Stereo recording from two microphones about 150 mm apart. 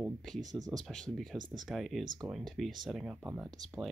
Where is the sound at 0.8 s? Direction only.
Centre (ahead or behind).